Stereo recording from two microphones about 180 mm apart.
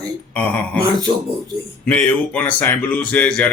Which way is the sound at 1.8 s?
10° left (ahead or behind).